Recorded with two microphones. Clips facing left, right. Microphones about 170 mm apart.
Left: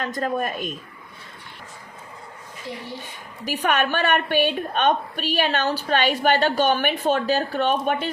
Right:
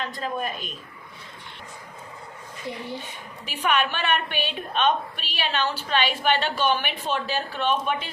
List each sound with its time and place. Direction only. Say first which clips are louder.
0.0 s a woman's voice: left 4 dB; 45° left (ahead or behind)
3.6 s a woman's voice: left 2 dB; 45° left (ahead or behind)